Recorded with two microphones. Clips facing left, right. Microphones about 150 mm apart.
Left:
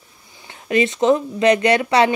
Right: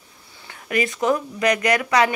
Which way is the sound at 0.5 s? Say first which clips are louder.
Left 5 dB; 25° left (ahead or behind).